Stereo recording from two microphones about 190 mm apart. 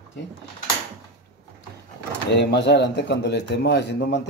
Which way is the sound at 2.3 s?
65° left (ahead or behind).